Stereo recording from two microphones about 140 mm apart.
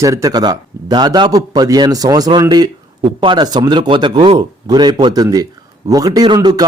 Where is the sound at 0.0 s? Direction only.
25° right (ahead or behind).